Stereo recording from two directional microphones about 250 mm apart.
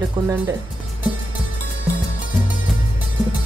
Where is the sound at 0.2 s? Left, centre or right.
Centre.